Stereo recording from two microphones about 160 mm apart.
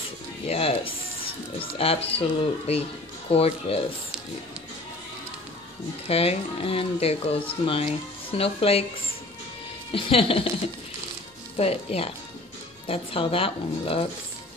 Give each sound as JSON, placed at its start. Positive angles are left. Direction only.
{"t": 0.5, "sound": "speech", "side_deg": 35}
{"t": 1.8, "sound": "speech", "side_deg": 35}
{"t": 6.0, "sound": "speech", "side_deg": 40}
{"t": 9.9, "sound": "speech", "side_deg": 35}
{"t": 11.5, "sound": "speech", "side_deg": 40}